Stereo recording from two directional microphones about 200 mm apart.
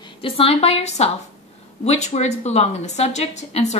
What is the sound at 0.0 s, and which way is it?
A woman's voice, 25° left (ahead or behind).